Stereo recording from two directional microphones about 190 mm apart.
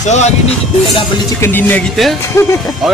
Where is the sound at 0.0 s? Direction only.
40° left (ahead or behind).